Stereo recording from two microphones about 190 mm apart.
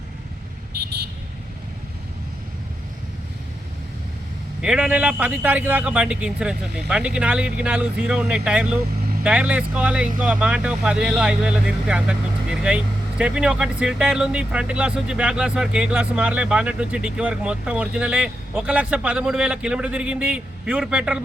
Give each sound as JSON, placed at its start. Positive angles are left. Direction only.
{"t": 0.7, "sound": "vehicle", "side_deg": -60}
{"t": 4.6, "sound": "speech", "side_deg": -5}